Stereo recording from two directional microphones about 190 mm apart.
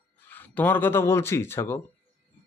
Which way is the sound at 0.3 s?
10° left (ahead or behind).